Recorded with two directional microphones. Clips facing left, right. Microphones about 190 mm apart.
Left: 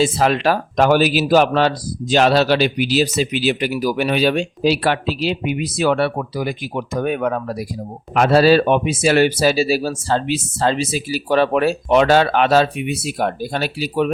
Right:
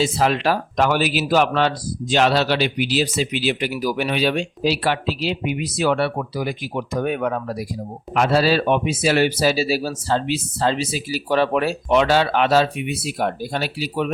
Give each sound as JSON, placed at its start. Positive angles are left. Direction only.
{"t": 0.0, "sound": "speech", "side_deg": 50}